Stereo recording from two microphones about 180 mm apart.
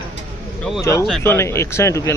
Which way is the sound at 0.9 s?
15° left (ahead or behind).